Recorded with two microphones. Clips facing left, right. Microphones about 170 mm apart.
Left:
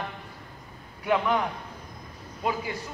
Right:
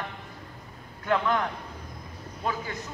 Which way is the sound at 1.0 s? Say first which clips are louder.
Left 1 dB; 10° left (ahead or behind).